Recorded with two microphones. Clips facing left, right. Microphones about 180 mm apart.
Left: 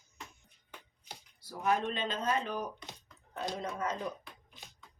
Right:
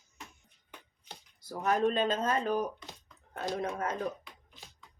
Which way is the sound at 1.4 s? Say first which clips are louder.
Right 3 dB; 45° right (ahead or behind).